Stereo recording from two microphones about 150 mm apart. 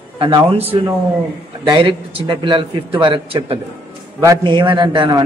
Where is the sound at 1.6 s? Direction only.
35° right (ahead or behind).